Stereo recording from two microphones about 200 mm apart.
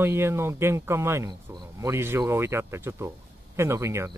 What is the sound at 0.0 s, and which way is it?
Speech, 10° right (ahead or behind).